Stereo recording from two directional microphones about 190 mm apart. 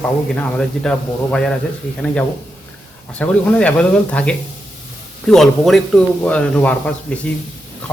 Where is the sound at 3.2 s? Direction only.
5° left (ahead or behind).